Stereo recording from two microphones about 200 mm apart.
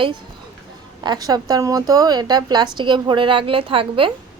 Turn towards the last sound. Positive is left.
turn(degrees=-25)  # may be behind; listen again after turning